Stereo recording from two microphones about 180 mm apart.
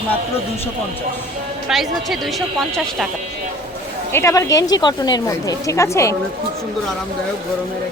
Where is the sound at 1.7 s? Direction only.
Centre (ahead or behind).